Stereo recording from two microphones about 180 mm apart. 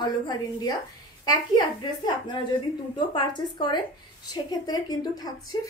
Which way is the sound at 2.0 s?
25° left (ahead or behind).